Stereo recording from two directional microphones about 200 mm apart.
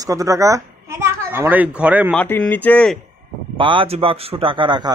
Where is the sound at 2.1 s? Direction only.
5° left (ahead or behind).